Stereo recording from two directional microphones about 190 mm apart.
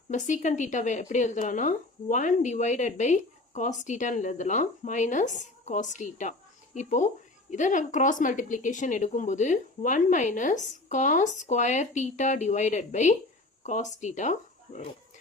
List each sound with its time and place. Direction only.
0.1 s a woman's voice: 40° left (ahead or behind)